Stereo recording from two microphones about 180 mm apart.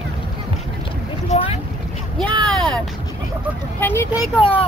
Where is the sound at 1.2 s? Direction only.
30° left (ahead or behind).